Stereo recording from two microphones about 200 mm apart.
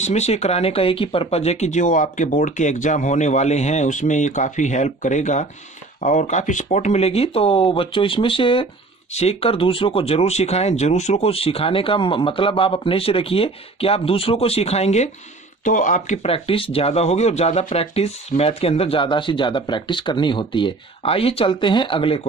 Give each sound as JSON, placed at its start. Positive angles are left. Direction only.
{"t": 0.0, "sound": "speech", "side_deg": 35}